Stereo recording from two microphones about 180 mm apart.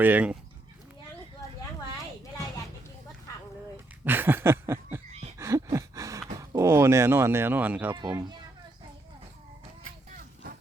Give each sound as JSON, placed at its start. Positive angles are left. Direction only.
{"t": 0.0, "sound": "speech", "side_deg": -10}
{"t": 4.0, "sound": "a sound", "side_deg": -10}
{"t": 6.4, "sound": "speech", "side_deg": -15}
{"t": 7.9, "sound": "speech", "side_deg": -20}